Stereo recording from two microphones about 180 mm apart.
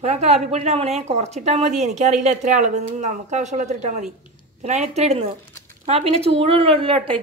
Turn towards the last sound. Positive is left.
turn(degrees=-30)  # may be behind; listen again after turning